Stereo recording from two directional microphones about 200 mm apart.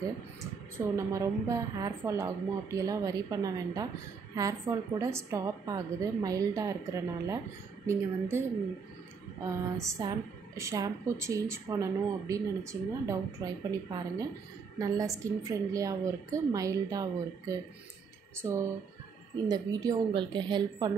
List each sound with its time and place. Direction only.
0.7 s speech: 15° right (ahead or behind)
19.5 s a woman's voice: 20° right (ahead or behind)